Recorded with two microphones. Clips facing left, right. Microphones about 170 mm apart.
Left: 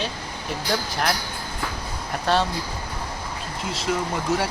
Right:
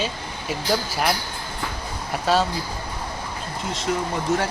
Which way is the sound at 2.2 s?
Centre (ahead or behind).